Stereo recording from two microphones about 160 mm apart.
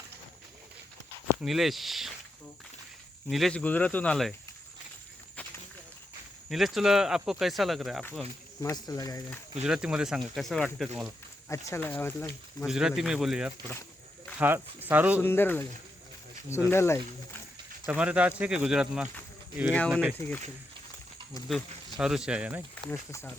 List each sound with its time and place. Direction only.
1.3 s speech: 5° right (ahead or behind)
3.2 s speech: centre (ahead or behind)
6.5 s speech: centre (ahead or behind)
8.6 s speech: 25° left (ahead or behind)
9.6 s speech: 5° right (ahead or behind)
11.4 s speech: 15° left (ahead or behind)
12.6 s speech: 5° right (ahead or behind)
15.2 s speech: 15° left (ahead or behind)
16.6 s speech: 15° left (ahead or behind)
17.8 s speech: 5° right (ahead or behind)
20.1 s speech: 10° left (ahead or behind)
21.9 s speech: 5° right (ahead or behind)
22.9 s speech: 10° left (ahead or behind)